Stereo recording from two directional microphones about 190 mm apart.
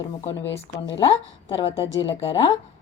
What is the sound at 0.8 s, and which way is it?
Speech, 25° left (ahead or behind).